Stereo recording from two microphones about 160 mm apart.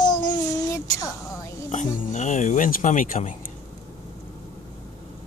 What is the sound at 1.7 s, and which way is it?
Speech, 50° left (ahead or behind).